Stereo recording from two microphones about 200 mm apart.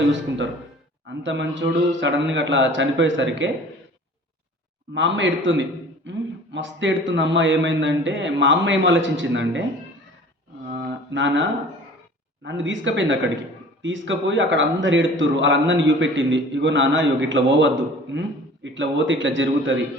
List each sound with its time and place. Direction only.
1.2 s a man's voice: 65° right (ahead or behind)
4.9 s a man's voice: 65° right (ahead or behind)
10.7 s mantra: 65° right (ahead or behind)
12.4 s a man's voice: 65° right (ahead or behind)